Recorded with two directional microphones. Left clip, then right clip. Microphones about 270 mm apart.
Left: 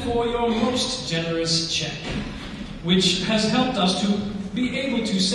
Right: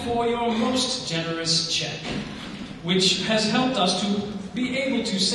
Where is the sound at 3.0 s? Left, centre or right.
Centre.